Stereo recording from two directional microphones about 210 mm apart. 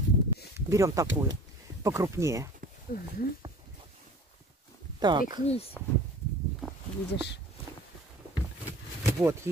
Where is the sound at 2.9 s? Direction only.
45° left (ahead or behind).